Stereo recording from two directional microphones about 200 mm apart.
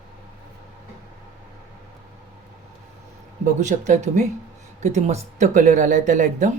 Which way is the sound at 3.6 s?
35° right (ahead or behind).